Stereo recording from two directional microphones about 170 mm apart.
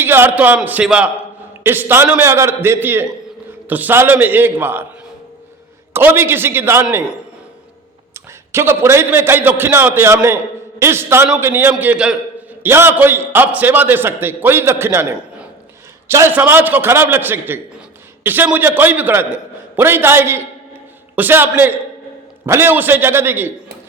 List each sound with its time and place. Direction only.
0.0 s a man's voice: 15° right (ahead or behind)
5.9 s a man's voice: 15° right (ahead or behind)